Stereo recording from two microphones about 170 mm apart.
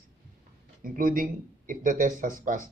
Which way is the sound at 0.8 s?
55° right (ahead or behind).